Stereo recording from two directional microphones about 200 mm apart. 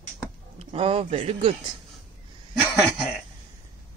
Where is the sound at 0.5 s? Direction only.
30° right (ahead or behind).